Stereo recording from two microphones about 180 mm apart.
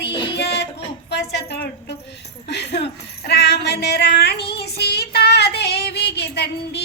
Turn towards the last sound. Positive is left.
turn(degrees=65)  # may be behind; listen again after turning